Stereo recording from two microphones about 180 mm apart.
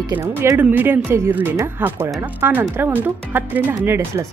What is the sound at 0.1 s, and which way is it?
Speech, 10° right (ahead or behind).